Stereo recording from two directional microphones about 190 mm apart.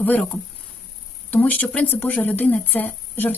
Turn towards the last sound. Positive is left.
turn(degrees=10)  # may be behind; listen again after turning